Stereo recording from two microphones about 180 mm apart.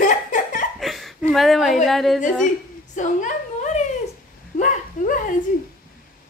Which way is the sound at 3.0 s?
45° left (ahead or behind).